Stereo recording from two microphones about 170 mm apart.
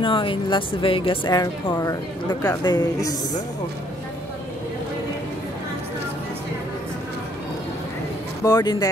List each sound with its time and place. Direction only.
0.0 s speech: 30° left (ahead or behind)
8.5 s speech: 25° left (ahead or behind)